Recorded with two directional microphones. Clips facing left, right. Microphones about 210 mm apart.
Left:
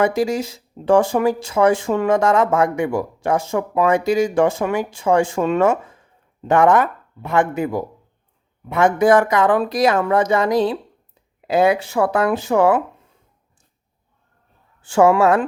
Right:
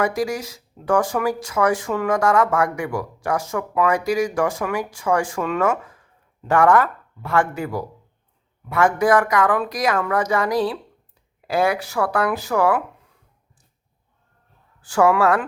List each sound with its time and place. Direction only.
0.0 s speech: 25° left (ahead or behind)
14.8 s speech: 25° left (ahead or behind)